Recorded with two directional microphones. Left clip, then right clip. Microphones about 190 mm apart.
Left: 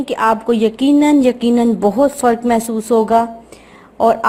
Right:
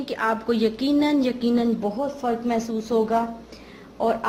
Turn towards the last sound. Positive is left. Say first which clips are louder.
# left 10 dB
turn(degrees=30)  # may be behind; listen again after turning